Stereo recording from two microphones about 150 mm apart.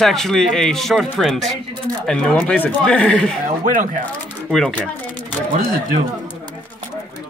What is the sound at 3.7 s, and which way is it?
Speech, 60° right (ahead or behind).